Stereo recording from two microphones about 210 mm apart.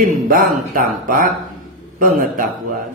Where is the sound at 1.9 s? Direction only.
45° right (ahead or behind).